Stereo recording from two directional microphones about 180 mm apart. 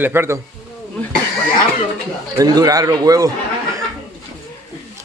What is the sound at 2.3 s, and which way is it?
Speech, 20° right (ahead or behind).